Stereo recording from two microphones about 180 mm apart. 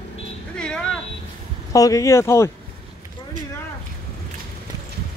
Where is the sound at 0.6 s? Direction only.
5° left (ahead or behind).